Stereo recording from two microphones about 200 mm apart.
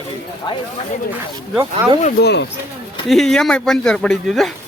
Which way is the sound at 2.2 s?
60° left (ahead or behind).